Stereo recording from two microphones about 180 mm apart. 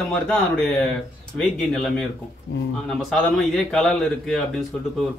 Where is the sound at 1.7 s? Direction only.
Centre (ahead or behind).